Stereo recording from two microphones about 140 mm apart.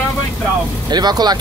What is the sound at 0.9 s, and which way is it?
Speech, 30° right (ahead or behind).